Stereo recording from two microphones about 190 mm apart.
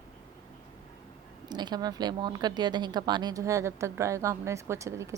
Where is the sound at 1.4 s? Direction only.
20° right (ahead or behind).